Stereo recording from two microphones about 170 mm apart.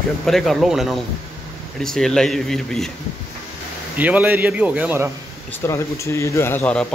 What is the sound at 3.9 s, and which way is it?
A man's voice, 10° right (ahead or behind).